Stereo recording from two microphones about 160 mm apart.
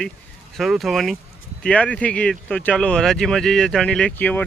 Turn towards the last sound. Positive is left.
turn(degrees=10)  # may be behind; listen again after turning